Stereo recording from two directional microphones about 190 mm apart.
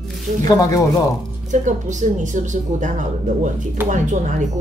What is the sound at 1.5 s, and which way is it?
Speech, 40° right (ahead or behind).